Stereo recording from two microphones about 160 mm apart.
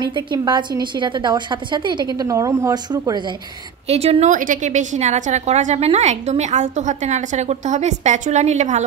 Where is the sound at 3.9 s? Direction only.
40° right (ahead or behind).